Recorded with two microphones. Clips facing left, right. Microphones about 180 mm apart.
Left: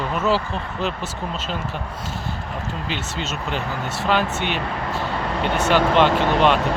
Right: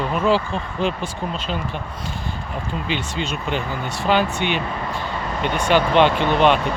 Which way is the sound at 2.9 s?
5° left (ahead or behind).